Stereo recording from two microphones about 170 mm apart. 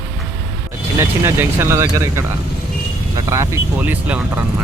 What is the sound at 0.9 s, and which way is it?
Speech, 15° right (ahead or behind).